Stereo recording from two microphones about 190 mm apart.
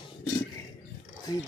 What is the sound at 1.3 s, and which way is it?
Speech, 20° left (ahead or behind).